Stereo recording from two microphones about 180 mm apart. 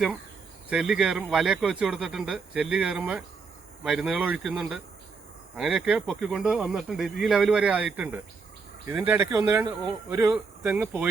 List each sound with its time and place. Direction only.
0.7 s speech: 5° right (ahead or behind)
10.1 s speech: 20° right (ahead or behind)
10.6 s speech: 10° right (ahead or behind)